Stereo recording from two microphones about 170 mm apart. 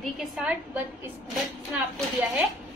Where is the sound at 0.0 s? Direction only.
Centre (ahead or behind).